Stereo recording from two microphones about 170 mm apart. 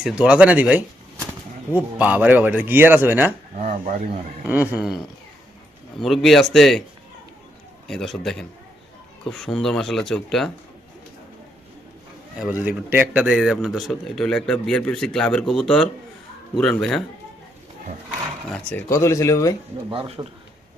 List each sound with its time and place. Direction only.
0.0 s speech: 5° right (ahead or behind)
3.6 s speech: 50° right (ahead or behind)
4.4 s speech: 10° right (ahead or behind)
6.0 s a man's voice: centre (ahead or behind)
7.9 s a man's voice: centre (ahead or behind)
12.4 s a man's voice: 10° right (ahead or behind)
18.5 s speech: 10° left (ahead or behind)
19.9 s speech: 30° right (ahead or behind)